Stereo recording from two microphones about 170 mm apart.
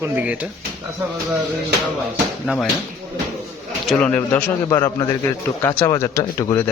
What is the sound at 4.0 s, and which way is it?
A man's voice, 10° left (ahead or behind).